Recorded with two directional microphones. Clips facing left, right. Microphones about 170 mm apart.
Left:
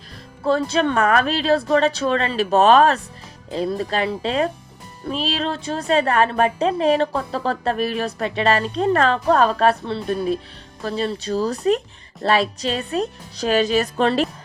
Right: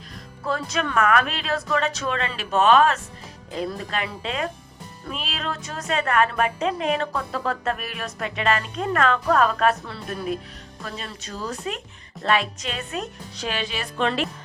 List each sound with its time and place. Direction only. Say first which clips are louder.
0.4 s a woman's voice: left 8 dB; 30° left (ahead or behind)